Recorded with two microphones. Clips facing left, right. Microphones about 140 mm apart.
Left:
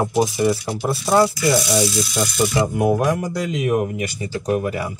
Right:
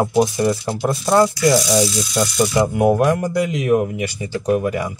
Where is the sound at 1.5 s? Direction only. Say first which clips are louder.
Right 3 dB; 20° right (ahead or behind).